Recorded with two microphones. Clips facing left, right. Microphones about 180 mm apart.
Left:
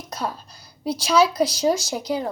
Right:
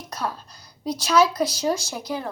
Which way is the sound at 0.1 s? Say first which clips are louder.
Left 1 dB; 10° left (ahead or behind).